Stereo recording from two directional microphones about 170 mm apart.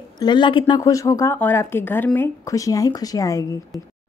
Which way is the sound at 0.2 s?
25° left (ahead or behind).